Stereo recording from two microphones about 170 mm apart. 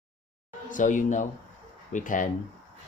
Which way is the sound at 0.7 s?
50° left (ahead or behind).